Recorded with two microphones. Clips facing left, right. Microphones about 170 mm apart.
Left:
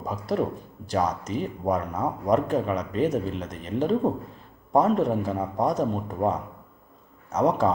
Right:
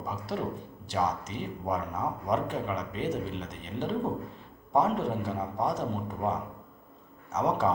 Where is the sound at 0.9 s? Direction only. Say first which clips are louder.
Left 5 dB; 40° left (ahead or behind).